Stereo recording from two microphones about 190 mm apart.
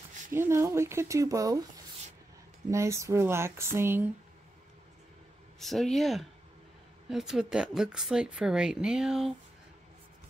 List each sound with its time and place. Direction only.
0.3 s speech: 15° right (ahead or behind)
2.7 s speech: 15° right (ahead or behind)
5.6 s speech: centre (ahead or behind)